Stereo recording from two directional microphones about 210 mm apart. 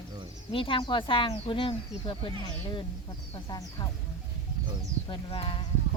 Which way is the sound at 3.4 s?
20° left (ahead or behind).